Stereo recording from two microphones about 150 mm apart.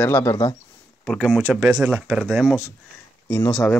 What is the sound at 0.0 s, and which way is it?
Speech, 15° left (ahead or behind).